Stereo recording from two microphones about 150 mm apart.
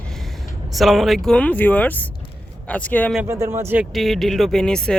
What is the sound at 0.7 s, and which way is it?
Speech, centre (ahead or behind).